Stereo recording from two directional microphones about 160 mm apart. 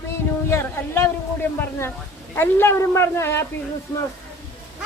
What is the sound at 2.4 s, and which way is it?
A woman's voice, 15° left (ahead or behind).